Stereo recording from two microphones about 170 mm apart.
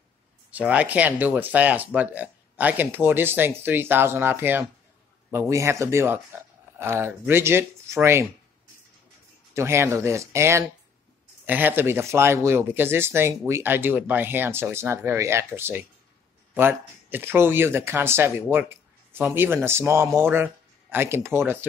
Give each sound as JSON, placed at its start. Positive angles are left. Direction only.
{"t": 0.5, "sound": "speech", "side_deg": -10}
{"t": 9.5, "sound": "speech", "side_deg": -15}